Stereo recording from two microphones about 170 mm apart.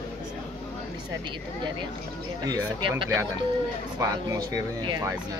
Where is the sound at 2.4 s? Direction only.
25° right (ahead or behind).